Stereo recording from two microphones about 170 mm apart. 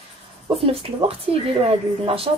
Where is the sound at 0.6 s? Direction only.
35° right (ahead or behind).